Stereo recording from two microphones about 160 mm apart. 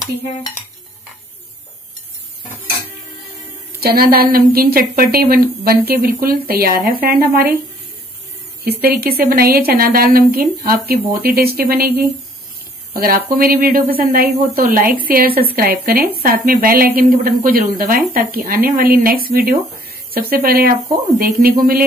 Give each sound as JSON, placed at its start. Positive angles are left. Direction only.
{"t": 3.8, "sound": "a woman's voice", "side_deg": -70}
{"t": 8.8, "sound": "a woman's voice", "side_deg": -75}
{"t": 12.9, "sound": "a woman's voice", "side_deg": -65}